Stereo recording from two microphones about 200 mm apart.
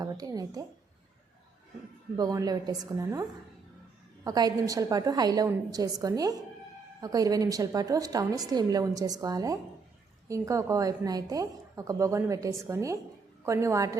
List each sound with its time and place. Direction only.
0.0 s a woman's voice: 20° right (ahead or behind)
2.1 s a woman's voice: 20° right (ahead or behind)